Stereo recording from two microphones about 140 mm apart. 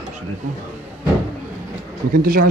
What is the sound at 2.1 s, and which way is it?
Speech, 90° right.